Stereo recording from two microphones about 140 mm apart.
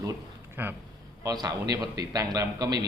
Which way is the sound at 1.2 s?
25° right (ahead or behind).